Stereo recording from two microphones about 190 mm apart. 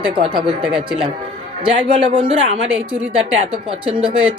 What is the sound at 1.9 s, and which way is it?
Speech, 30° right (ahead or behind).